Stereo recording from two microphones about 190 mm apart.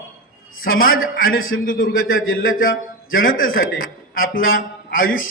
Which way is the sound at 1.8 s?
90° left.